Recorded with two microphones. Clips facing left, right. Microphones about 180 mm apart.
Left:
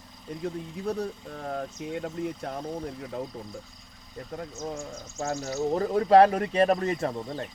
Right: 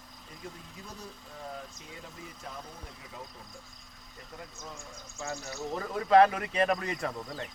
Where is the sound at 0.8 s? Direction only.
65° left (ahead or behind).